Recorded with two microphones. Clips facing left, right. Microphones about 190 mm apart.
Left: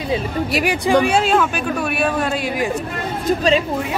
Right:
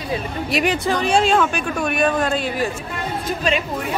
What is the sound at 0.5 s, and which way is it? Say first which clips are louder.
A man's voice: left 2 dB; 5° left (ahead or behind).